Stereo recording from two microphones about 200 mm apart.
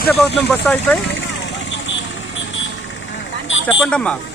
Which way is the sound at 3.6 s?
5° left (ahead or behind).